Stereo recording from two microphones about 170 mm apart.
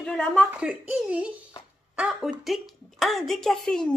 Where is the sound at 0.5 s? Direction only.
10° right (ahead or behind).